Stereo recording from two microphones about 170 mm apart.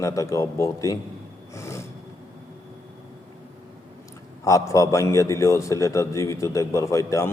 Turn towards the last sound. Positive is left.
turn(degrees=20)  # may be behind; listen again after turning